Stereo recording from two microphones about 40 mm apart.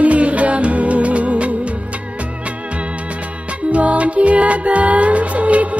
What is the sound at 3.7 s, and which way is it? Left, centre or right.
Music, right.